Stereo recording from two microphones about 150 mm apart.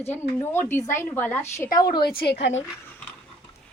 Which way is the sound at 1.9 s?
90° left.